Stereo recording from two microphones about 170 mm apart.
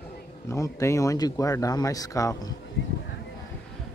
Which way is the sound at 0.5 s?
20° left (ahead or behind).